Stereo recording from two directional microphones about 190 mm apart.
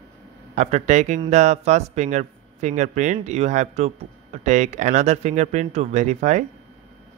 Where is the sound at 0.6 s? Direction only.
35° right (ahead or behind).